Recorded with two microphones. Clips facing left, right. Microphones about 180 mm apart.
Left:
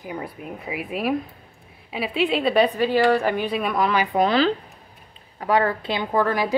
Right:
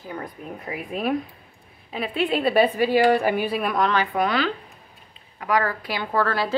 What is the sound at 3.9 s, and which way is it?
Speech, 15° left (ahead or behind).